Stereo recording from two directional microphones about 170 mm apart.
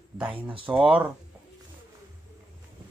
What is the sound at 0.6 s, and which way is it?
Speech, 5° right (ahead or behind).